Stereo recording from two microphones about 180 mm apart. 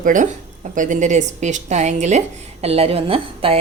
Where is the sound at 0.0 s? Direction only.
45° right (ahead or behind).